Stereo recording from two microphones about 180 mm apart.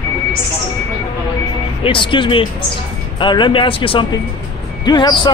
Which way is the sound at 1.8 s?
25° left (ahead or behind).